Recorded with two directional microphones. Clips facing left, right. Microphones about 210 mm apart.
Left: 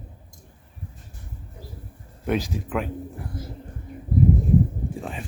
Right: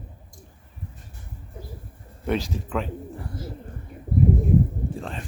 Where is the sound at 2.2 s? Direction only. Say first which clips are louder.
Left 1 dB; 10° left (ahead or behind).